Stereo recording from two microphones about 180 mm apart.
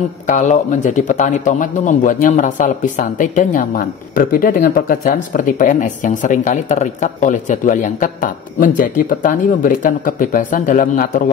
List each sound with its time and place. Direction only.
0.3 s speech: 40° left (ahead or behind)